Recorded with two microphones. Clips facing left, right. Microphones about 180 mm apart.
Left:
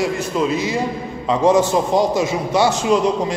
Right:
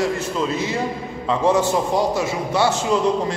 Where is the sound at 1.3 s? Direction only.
15° left (ahead or behind).